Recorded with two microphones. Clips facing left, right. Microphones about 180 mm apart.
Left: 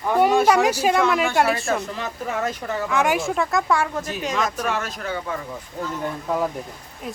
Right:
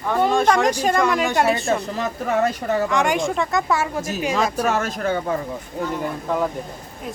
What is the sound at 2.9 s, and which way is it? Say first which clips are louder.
Speech: right 1 dB; 5° left (ahead or behind).